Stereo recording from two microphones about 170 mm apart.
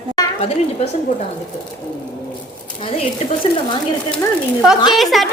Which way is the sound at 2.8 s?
35° left (ahead or behind).